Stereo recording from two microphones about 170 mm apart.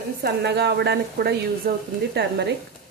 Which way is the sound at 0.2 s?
75° right (ahead or behind).